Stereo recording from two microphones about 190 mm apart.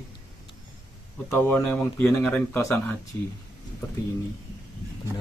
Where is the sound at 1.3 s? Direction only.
10° left (ahead or behind).